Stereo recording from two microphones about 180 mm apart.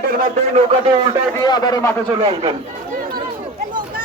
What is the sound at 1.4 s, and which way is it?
Speech, 20° left (ahead or behind).